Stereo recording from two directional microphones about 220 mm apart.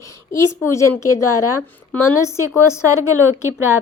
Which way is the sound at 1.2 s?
90° left.